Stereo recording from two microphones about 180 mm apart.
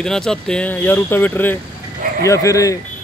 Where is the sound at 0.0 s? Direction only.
5° left (ahead or behind).